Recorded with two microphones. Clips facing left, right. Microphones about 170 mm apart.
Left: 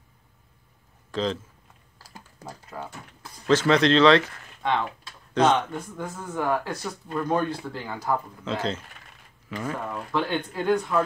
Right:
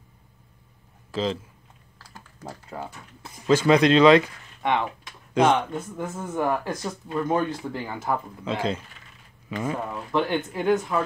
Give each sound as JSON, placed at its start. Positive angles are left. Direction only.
{"t": 1.1, "sound": "a man's voice", "side_deg": -5}
{"t": 2.7, "sound": "a sound", "side_deg": -25}
{"t": 3.4, "sound": "speech", "side_deg": -10}